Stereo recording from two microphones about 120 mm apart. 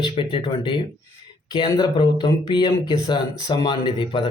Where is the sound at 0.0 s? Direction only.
45° left (ahead or behind).